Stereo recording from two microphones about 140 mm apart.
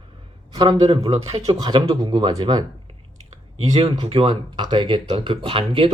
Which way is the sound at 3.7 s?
35° right (ahead or behind).